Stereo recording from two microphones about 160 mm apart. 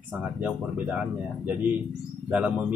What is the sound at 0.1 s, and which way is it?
Speech, 10° right (ahead or behind).